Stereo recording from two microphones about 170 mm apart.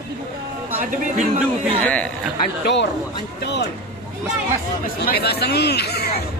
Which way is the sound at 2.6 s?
90° left.